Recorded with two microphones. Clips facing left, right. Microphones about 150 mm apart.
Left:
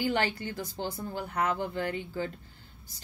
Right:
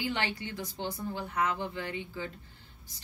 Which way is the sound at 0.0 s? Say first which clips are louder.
Left 4 dB; 45° left (ahead or behind).